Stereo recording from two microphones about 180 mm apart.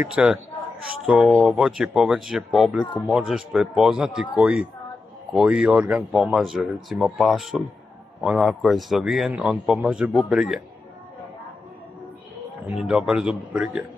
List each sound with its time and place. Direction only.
0.0 s a man's voice: 5° right (ahead or behind)
12.6 s a man's voice: 5° right (ahead or behind)